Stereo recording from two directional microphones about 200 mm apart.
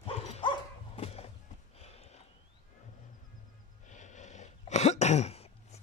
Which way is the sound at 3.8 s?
35° left (ahead or behind).